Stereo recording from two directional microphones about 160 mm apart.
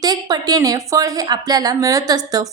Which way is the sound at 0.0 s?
25° right (ahead or behind).